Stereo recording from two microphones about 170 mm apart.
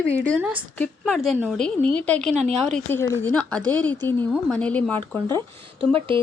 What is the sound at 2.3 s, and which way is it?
Speech, 40° right (ahead or behind).